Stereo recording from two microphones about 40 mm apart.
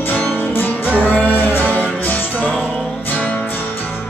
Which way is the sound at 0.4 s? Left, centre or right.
Left.